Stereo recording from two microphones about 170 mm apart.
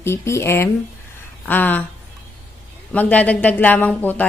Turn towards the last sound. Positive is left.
turn(degrees=10)  # may be behind; listen again after turning